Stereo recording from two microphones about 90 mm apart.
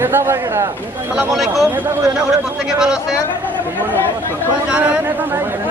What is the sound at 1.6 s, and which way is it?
Speech, 20° right (ahead or behind).